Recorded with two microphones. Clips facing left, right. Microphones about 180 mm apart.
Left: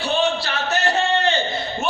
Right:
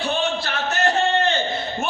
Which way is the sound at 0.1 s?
55° right (ahead or behind).